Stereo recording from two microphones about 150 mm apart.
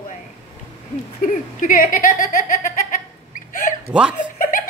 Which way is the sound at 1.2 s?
65° left (ahead or behind).